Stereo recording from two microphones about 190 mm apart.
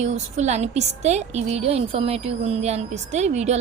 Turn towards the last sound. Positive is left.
turn(degrees=-35)  # may be behind; listen again after turning